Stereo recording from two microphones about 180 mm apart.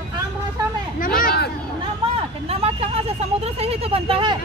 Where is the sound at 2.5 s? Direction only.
35° right (ahead or behind).